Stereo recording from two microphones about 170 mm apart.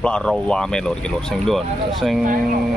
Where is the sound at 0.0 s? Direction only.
5° left (ahead or behind).